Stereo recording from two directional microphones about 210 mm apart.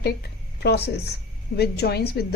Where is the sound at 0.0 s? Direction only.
50° left (ahead or behind).